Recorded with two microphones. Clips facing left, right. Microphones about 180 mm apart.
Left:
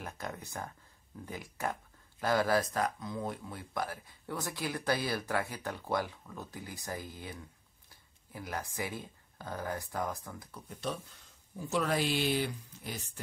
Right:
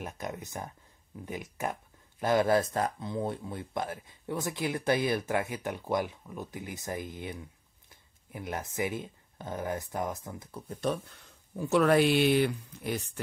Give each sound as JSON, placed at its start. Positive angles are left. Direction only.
{"t": 0.0, "sound": "speech", "side_deg": -20}
{"t": 10.7, "sound": "speech", "side_deg": -50}
{"t": 11.5, "sound": "speech", "side_deg": -65}